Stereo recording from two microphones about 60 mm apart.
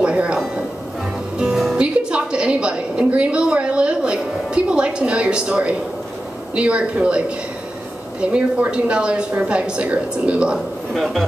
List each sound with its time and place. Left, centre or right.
0.0 s speech: centre
1.4 s music: centre
1.8 s a sound: centre
6.5 s a woman's voice: centre